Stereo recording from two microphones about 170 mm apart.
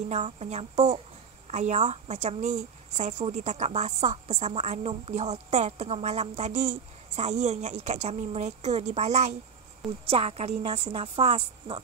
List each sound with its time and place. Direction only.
0.1 s speech: 40° right (ahead or behind)